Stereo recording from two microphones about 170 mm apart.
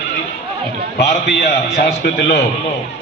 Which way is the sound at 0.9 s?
75° left (ahead or behind).